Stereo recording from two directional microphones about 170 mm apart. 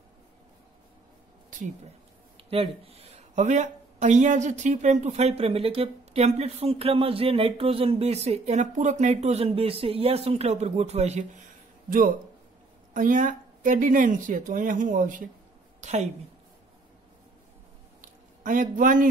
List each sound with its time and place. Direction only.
2.5 s speech: 35° right (ahead or behind)
11.9 s a woman's voice: 55° right (ahead or behind)
18.0 s a sound: 50° right (ahead or behind)